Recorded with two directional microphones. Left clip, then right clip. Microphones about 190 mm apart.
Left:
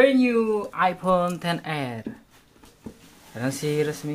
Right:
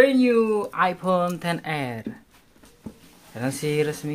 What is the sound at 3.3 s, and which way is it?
Speech, 5° right (ahead or behind).